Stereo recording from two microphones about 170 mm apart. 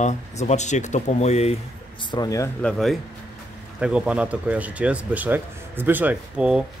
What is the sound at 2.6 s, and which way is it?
Speech, centre (ahead or behind).